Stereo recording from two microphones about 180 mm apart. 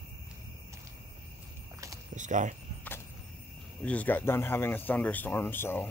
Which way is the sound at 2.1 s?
45° right (ahead or behind).